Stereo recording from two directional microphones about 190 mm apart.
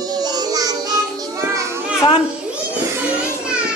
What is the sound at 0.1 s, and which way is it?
Music, 20° right (ahead or behind).